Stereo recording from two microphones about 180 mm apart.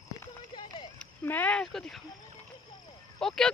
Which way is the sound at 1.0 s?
10° left (ahead or behind).